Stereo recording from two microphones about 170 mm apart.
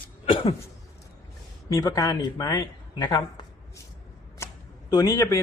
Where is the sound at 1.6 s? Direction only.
20° left (ahead or behind).